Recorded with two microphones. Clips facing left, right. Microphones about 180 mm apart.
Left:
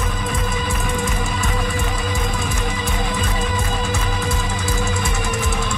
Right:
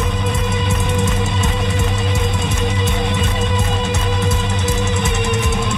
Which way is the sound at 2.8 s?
25° right (ahead or behind).